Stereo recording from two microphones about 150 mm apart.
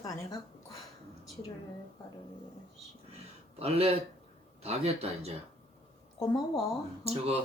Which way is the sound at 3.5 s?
40° right (ahead or behind).